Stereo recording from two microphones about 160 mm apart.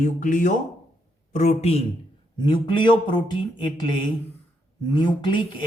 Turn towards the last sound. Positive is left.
turn(degrees=30)  # may be behind; listen again after turning